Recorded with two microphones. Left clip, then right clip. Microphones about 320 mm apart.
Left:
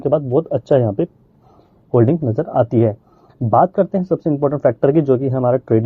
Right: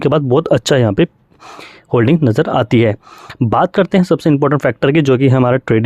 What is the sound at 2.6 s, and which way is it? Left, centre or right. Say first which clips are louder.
Speech: right 2 dB; right.